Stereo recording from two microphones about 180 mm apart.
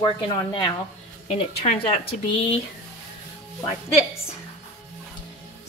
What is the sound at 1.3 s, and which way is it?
Speech, 35° left (ahead or behind).